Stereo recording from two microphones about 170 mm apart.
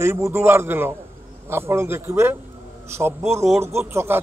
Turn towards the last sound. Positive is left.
turn(degrees=-15)  # may be behind; listen again after turning